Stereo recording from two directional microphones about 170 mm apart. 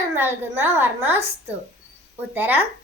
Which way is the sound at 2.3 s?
10° right (ahead or behind).